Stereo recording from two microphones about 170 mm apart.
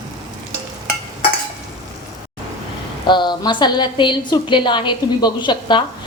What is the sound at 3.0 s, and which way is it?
A woman's voice, 25° left (ahead or behind).